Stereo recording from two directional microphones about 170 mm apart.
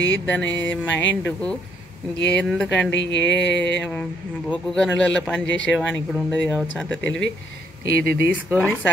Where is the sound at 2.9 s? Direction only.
90° left.